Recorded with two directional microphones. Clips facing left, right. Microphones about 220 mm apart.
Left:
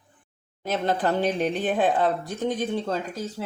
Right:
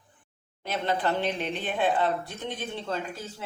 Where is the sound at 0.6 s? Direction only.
40° left (ahead or behind).